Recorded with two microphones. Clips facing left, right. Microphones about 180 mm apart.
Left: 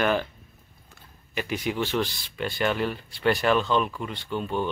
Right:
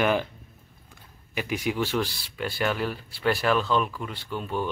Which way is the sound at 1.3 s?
10° right (ahead or behind).